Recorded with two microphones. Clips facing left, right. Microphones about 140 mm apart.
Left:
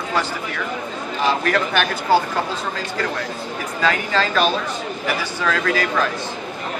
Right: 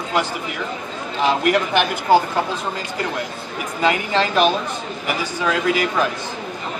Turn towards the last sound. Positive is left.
turn(degrees=-15)  # may be behind; listen again after turning